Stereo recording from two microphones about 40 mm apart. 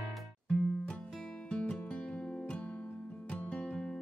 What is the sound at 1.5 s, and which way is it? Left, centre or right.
Music, left.